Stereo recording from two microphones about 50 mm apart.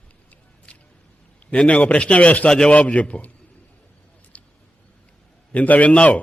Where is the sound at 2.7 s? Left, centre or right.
Left.